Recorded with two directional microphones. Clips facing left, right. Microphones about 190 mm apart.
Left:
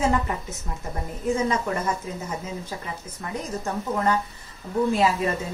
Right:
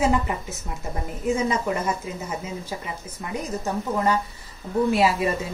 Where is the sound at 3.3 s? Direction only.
10° right (ahead or behind).